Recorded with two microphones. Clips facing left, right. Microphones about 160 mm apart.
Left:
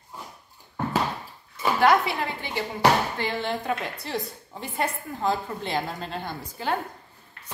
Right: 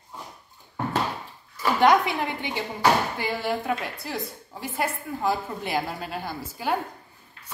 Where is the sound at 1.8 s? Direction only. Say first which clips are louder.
Right 1 dB; 15° right (ahead or behind).